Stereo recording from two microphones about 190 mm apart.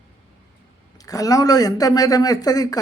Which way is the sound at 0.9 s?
20° left (ahead or behind).